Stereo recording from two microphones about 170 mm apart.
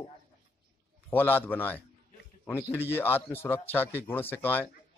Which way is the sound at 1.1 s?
10° left (ahead or behind).